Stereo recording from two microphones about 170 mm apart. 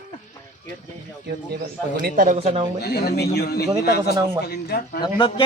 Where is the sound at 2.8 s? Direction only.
70° left (ahead or behind).